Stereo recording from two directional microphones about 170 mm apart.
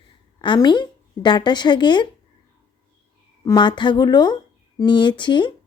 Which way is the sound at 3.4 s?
25° left (ahead or behind).